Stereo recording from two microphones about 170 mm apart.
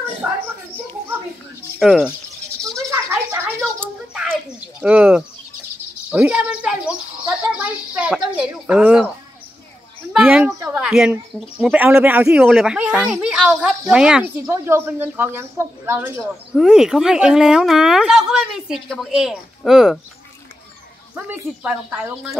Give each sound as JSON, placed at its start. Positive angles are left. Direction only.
{"t": 1.8, "sound": "speech", "side_deg": 0}
{"t": 2.6, "sound": "snake", "side_deg": -15}
{"t": 4.1, "sound": "bird", "side_deg": -5}
{"t": 4.8, "sound": "speech", "side_deg": -5}
{"t": 10.1, "sound": "speech", "side_deg": -10}
{"t": 16.2, "sound": "speech", "side_deg": 0}
{"t": 21.3, "sound": "speech", "side_deg": -5}